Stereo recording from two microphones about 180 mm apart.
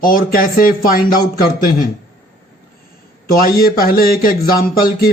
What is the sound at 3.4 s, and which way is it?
Speech, 55° left (ahead or behind).